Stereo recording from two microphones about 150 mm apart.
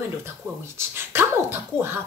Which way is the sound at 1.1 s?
15° right (ahead or behind).